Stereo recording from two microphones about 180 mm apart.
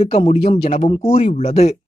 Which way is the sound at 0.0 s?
35° left (ahead or behind).